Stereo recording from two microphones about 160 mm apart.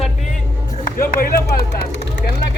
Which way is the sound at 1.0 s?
65° left (ahead or behind).